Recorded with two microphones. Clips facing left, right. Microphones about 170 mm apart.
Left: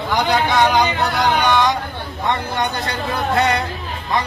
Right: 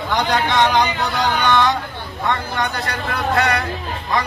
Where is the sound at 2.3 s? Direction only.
20° left (ahead or behind).